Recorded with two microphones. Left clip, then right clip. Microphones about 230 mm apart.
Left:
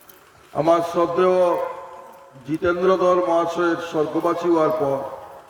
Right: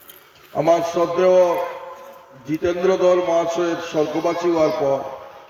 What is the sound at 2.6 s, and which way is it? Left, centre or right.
A man's voice, right.